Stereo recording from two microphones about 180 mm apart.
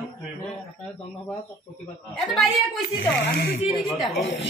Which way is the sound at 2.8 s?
70° left (ahead or behind).